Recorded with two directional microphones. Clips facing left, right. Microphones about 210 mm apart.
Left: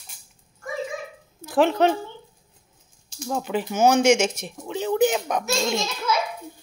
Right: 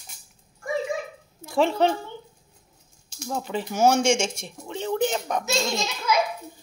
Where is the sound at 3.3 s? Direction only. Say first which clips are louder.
Left 3 dB; 5° left (ahead or behind).